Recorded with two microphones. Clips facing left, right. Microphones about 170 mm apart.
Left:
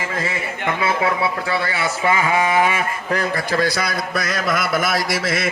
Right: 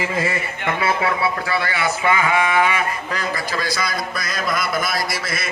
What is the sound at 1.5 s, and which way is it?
Speech, 25° left (ahead or behind).